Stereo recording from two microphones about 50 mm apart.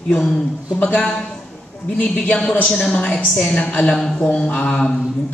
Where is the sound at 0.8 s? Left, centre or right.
Left.